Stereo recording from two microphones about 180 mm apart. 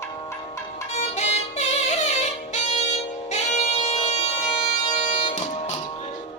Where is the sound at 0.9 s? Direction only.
40° left (ahead or behind).